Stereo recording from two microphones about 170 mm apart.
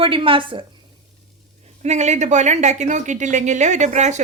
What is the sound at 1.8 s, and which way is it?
Speech, 40° right (ahead or behind).